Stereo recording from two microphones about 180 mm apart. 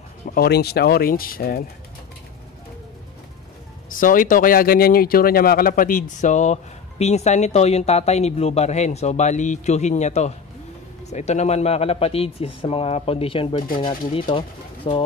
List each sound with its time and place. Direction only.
0.3 s speech: 60° left (ahead or behind)
3.9 s speech: 50° left (ahead or behind); by 15.0 s 30° left (ahead or behind)